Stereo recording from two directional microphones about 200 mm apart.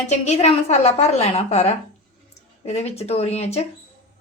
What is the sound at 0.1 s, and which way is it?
A woman's voice, 35° left (ahead or behind).